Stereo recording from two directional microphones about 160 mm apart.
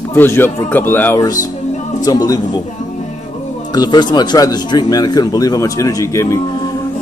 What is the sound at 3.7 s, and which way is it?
A man's voice, 25° left (ahead or behind).